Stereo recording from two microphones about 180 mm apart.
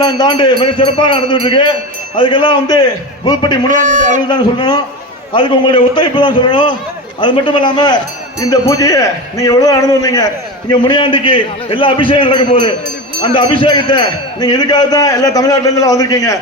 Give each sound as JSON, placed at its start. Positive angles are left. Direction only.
{"t": 0.0, "sound": "a man's voice", "side_deg": 25}
{"t": 3.8, "sound": "a man's voice", "side_deg": -45}
{"t": 4.3, "sound": "a man's voice", "side_deg": 25}